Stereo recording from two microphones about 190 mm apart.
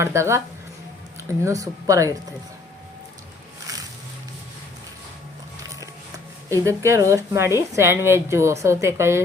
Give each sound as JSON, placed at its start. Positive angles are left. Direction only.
{"t": 0.0, "sound": "a woman's voice", "side_deg": -15}
{"t": 3.7, "sound": "music", "side_deg": -20}
{"t": 6.5, "sound": "a woman's voice", "side_deg": -15}